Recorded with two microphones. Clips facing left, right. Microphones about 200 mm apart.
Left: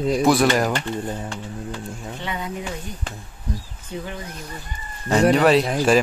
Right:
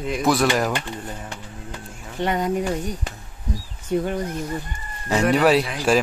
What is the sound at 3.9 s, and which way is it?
Speech, 45° right (ahead or behind).